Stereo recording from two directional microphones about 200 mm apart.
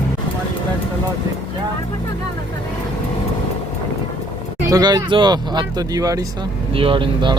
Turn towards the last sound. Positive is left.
turn(degrees=-25)  # may be behind; listen again after turning